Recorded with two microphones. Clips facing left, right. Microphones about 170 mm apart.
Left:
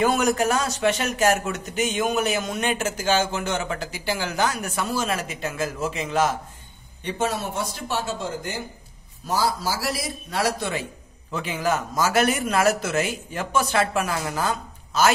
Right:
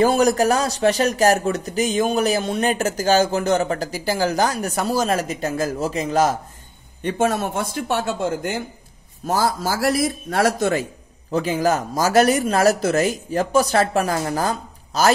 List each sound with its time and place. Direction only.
0.0 s speech: 35° right (ahead or behind)
7.0 s a man's voice: 50° right (ahead or behind)